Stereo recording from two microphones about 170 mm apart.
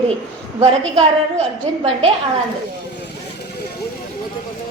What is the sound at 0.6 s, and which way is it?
A woman's voice, 35° right (ahead or behind).